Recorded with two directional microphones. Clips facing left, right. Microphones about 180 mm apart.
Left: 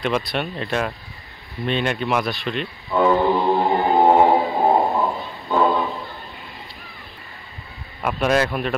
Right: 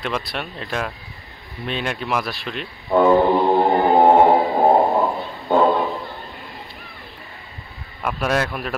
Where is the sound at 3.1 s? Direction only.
35° right (ahead or behind).